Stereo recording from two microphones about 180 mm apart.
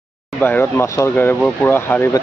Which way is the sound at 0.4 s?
10° left (ahead or behind).